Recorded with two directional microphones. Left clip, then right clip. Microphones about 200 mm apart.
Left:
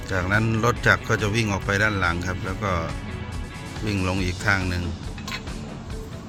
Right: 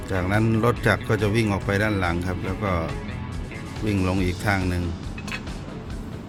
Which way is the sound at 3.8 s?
15° right (ahead or behind).